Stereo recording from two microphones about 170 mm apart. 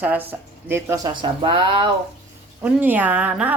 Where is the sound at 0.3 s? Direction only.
15° right (ahead or behind).